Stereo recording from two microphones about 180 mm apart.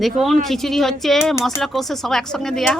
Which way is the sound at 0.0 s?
Centre (ahead or behind).